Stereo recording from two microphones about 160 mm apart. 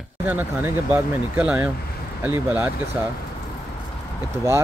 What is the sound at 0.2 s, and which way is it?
Speech, 10° right (ahead or behind).